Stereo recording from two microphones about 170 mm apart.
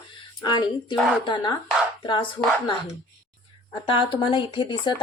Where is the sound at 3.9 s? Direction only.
30° left (ahead or behind).